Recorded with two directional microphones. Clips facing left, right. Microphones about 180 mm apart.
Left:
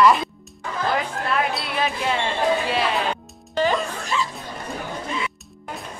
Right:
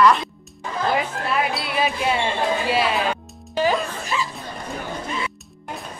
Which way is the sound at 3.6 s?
5° right (ahead or behind).